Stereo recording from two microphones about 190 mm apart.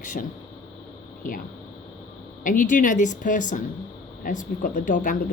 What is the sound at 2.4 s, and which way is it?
A woman's voice, 45° left (ahead or behind).